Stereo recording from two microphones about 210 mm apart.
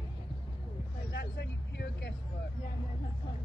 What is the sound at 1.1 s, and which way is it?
Vehicle, 55° left (ahead or behind).